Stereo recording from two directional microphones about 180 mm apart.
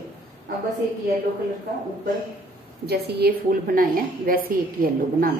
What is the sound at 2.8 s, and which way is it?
A woman's voice, 65° right (ahead or behind).